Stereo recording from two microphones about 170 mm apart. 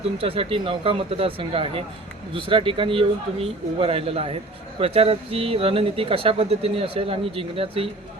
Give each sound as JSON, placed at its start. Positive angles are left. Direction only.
{"t": 0.0, "sound": "speech", "side_deg": -35}